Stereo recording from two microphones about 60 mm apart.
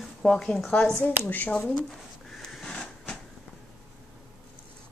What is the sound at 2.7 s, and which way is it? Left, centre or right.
Printer, centre.